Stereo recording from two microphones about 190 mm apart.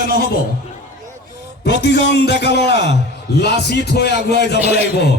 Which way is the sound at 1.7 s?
65° left (ahead or behind).